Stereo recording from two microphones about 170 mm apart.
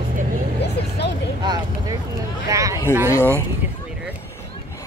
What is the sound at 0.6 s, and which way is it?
Vehicle, 80° left.